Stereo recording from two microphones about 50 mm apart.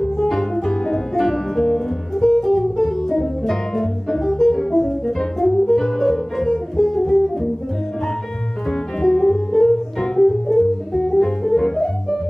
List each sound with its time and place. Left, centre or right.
0.0 s music: centre
8.6 s music: centre